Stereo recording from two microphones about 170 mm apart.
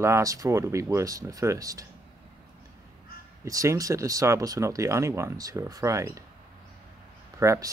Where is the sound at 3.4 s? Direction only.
20° right (ahead or behind).